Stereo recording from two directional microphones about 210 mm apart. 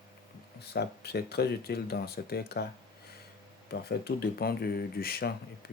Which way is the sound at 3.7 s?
50° left (ahead or behind).